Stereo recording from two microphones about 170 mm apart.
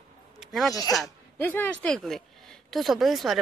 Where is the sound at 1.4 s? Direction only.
10° left (ahead or behind).